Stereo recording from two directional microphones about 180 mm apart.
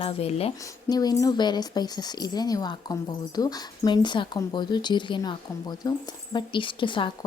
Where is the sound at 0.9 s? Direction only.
20° left (ahead or behind).